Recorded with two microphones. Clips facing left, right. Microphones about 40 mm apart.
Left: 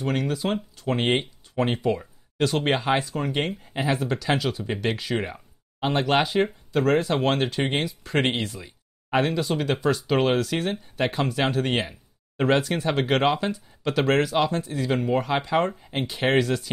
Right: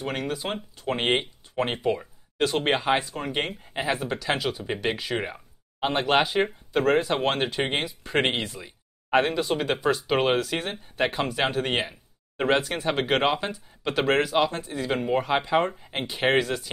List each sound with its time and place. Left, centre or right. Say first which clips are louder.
0.0 s speech: left 4 dB; centre
7.0 s speech: left 1 dB; centre